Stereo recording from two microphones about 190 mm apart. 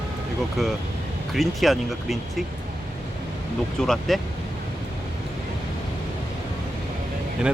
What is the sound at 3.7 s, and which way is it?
Speech, centre (ahead or behind).